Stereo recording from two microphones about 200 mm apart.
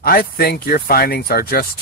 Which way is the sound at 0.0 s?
50° left (ahead or behind).